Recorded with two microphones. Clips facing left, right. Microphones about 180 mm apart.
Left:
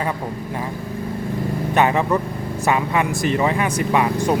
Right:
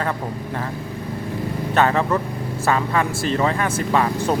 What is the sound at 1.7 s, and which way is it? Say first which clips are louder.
Speech: left 1 dB; 15° left (ahead or behind).